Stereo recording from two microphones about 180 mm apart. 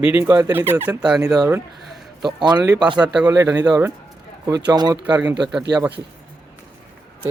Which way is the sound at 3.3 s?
20° right (ahead or behind).